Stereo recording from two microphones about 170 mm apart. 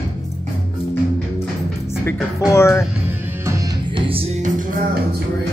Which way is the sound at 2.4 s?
15° left (ahead or behind).